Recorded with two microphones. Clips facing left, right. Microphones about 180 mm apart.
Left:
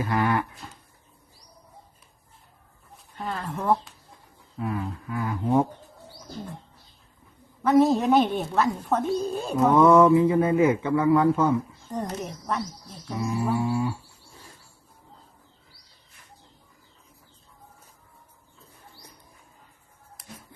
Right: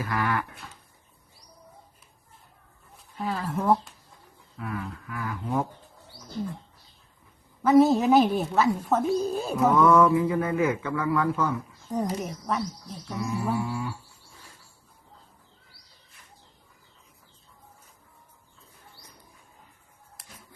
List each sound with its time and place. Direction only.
0.0 s a man's voice: 25° left (ahead or behind)
3.2 s a woman's voice: centre (ahead or behind)
4.5 s a man's voice: 25° left (ahead or behind)
7.6 s a woman's voice: centre (ahead or behind)
9.7 s a man's voice: 25° left (ahead or behind)
11.9 s a woman's voice: 5° right (ahead or behind)
13.1 s a man's voice: 20° left (ahead or behind)